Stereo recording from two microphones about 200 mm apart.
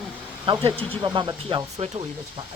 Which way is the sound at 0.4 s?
25° right (ahead or behind).